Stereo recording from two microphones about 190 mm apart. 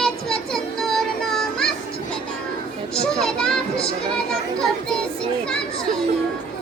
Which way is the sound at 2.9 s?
5° left (ahead or behind).